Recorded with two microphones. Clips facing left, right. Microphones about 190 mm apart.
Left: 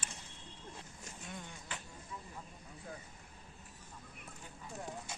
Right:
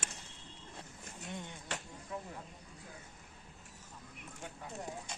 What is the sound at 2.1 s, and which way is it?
Speech, 75° right (ahead or behind).